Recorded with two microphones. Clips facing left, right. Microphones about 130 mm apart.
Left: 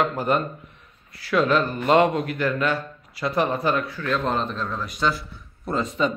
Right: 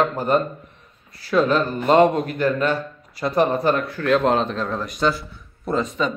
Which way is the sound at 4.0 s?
70° right (ahead or behind).